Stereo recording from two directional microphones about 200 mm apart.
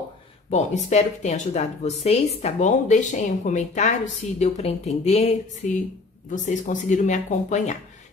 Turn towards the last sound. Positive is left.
turn(degrees=35)  # may be behind; listen again after turning